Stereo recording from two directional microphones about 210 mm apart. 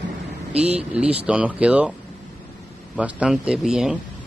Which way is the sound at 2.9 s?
5° right (ahead or behind).